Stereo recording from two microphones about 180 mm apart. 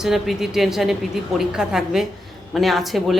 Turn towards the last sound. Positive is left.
turn(degrees=0)  # may be behind; listen again after turning